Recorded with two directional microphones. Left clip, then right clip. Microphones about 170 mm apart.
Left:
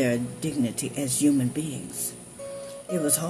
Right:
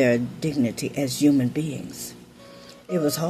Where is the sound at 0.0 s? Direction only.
30° right (ahead or behind).